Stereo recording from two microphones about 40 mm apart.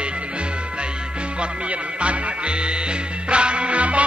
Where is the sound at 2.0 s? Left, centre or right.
Right.